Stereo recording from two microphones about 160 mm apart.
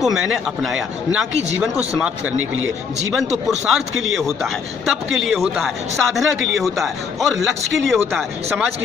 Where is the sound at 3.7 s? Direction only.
Centre (ahead or behind).